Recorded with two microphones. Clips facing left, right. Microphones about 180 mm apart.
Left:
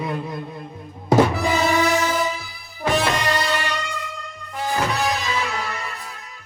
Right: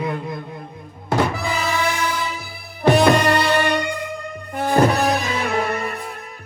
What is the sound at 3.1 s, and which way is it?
Music, 60° right (ahead or behind).